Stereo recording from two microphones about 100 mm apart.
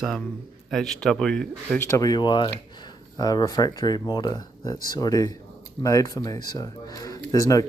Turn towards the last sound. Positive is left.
turn(degrees=35)  # may be behind; listen again after turning